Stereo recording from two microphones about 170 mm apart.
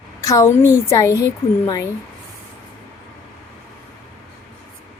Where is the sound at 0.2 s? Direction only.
20° left (ahead or behind).